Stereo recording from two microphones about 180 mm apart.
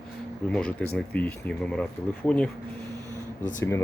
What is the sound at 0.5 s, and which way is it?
Speech, 5° left (ahead or behind).